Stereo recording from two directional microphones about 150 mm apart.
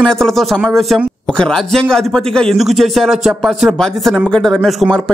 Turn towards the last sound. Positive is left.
turn(degrees=5)  # may be behind; listen again after turning